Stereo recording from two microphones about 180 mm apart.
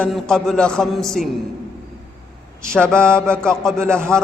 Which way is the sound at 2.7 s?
5° left (ahead or behind).